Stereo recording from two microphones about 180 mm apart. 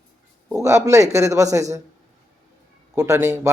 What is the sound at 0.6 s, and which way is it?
Speech, 15° right (ahead or behind).